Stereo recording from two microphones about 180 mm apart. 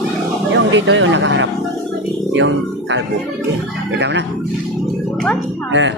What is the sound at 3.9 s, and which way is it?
Speech, 75° right (ahead or behind).